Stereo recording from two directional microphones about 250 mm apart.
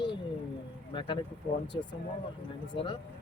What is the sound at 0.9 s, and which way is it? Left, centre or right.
Speech, centre.